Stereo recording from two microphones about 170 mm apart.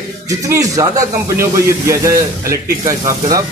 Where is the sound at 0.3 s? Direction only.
20° right (ahead or behind).